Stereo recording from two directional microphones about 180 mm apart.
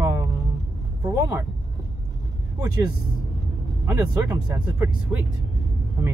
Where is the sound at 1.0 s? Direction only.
15° right (ahead or behind).